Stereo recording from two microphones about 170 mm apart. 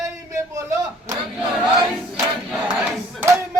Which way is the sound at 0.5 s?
20° right (ahead or behind).